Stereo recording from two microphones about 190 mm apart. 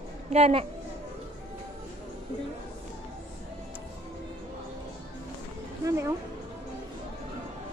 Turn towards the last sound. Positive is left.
turn(degrees=-15)  # may be behind; listen again after turning